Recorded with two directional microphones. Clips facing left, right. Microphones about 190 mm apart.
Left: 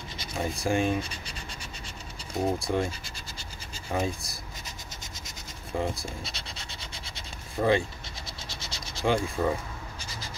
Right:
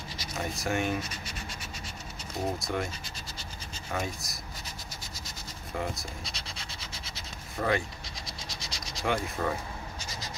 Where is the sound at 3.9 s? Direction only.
30° left (ahead or behind).